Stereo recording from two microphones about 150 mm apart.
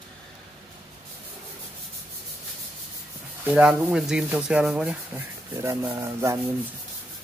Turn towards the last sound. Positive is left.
turn(degrees=-20)  # may be behind; listen again after turning